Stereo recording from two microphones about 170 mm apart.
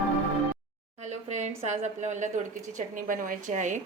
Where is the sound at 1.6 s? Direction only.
40° right (ahead or behind).